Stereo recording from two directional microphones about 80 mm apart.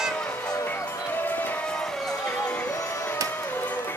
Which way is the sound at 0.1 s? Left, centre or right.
Centre.